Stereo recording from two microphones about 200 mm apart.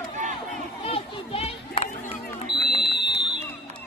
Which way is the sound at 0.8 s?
30° left (ahead or behind).